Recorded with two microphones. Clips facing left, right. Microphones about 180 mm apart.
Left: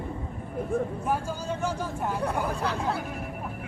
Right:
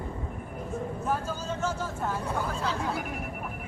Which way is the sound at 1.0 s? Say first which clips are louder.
Left 2 dB; 15° left (ahead or behind).